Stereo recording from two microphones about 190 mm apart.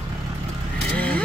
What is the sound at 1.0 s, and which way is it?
Vehicle, 5° left (ahead or behind).